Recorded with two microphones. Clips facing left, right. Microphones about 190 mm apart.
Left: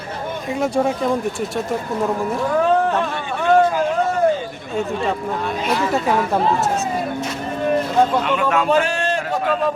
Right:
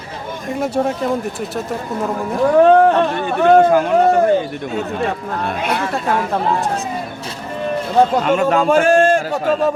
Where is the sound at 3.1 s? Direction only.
50° right (ahead or behind).